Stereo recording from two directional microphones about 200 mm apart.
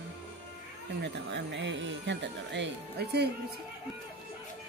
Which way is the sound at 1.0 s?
60° right (ahead or behind).